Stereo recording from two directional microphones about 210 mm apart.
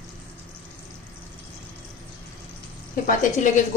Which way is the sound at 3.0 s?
35° left (ahead or behind).